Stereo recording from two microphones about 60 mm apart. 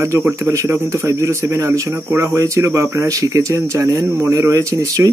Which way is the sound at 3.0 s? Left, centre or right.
Right.